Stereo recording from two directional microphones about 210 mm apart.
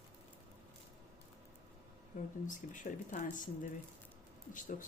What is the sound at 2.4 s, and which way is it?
Speech, 35° left (ahead or behind).